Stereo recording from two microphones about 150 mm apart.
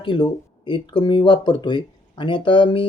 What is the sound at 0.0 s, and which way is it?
Speech, 30° left (ahead or behind).